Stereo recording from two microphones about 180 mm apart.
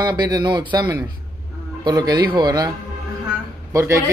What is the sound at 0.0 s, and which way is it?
A man's voice, 25° right (ahead or behind).